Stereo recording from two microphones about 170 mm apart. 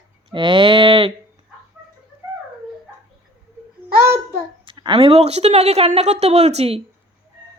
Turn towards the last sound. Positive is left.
turn(degrees=-35)  # may be behind; listen again after turning